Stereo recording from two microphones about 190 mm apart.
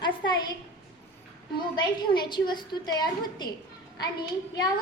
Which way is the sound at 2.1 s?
25° left (ahead or behind).